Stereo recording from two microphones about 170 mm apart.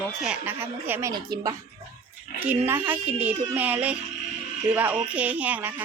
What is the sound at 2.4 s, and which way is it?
Speech, 10° right (ahead or behind).